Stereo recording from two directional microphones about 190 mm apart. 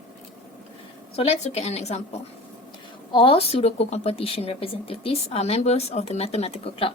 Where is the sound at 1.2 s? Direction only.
35° left (ahead or behind).